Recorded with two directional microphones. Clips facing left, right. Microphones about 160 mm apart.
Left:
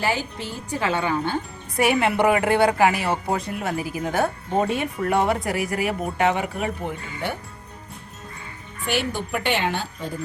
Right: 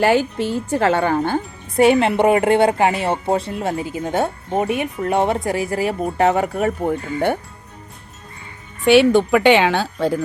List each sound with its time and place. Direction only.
0.0 s a woman's voice: 60° right (ahead or behind); by 1.4 s 45° right (ahead or behind)
1.7 s a woman's voice: 25° right (ahead or behind); by 7.3 s 45° right (ahead or behind)
8.8 s a woman's voice: 85° right